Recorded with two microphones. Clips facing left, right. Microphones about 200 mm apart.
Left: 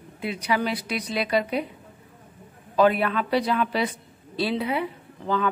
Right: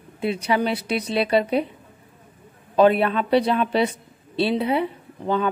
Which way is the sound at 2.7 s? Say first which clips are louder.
Right 4 dB; 25° right (ahead or behind).